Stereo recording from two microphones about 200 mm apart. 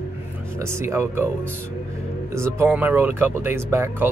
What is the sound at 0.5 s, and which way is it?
Speech, 15° right (ahead or behind).